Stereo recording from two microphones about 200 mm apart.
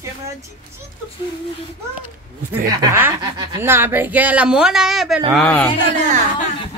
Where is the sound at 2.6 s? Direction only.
15° right (ahead or behind); by 5.7 s 5° left (ahead or behind).